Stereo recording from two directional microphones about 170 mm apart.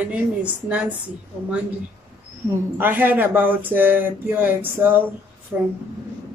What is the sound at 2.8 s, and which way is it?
Speech, 10° right (ahead or behind).